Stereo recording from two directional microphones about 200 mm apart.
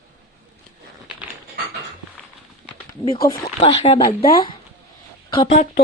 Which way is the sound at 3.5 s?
30° left (ahead or behind).